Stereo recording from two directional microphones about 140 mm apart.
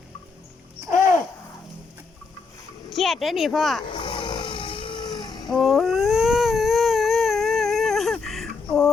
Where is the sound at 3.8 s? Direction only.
40° left (ahead or behind).